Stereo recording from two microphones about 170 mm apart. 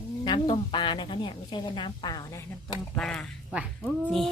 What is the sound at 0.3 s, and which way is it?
A woman's voice, 30° left (ahead or behind).